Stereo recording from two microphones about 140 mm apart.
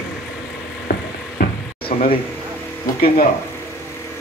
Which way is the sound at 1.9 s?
60° left (ahead or behind).